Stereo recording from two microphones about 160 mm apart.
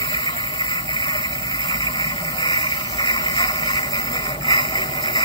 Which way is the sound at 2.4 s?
30° left (ahead or behind).